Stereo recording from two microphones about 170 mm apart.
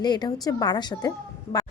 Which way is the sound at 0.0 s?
25° left (ahead or behind).